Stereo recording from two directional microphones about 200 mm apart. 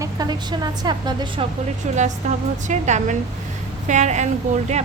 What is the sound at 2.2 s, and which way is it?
A woman's voice, 35° right (ahead or behind).